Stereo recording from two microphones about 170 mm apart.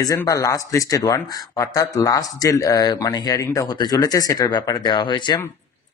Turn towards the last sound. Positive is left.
turn(degrees=25)  # may be behind; listen again after turning